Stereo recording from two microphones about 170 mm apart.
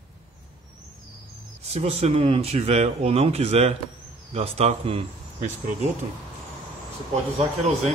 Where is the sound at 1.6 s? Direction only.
35° right (ahead or behind).